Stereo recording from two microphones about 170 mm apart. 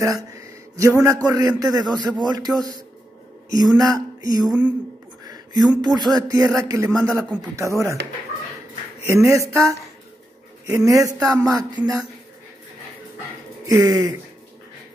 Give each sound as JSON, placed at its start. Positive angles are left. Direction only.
{"t": 0.0, "sound": "a man's voice", "side_deg": -20}
{"t": 4.5, "sound": "speech", "side_deg": -5}
{"t": 5.2, "sound": "a sound", "side_deg": -25}
{"t": 5.9, "sound": "speech", "side_deg": -25}
{"t": 9.0, "sound": "speech", "side_deg": -15}
{"t": 10.9, "sound": "speech", "side_deg": -20}
{"t": 13.7, "sound": "speech", "side_deg": -20}